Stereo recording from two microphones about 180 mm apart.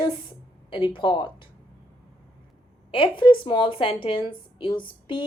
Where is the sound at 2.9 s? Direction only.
30° left (ahead or behind).